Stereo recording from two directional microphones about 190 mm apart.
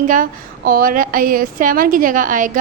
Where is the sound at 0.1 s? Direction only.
50° right (ahead or behind).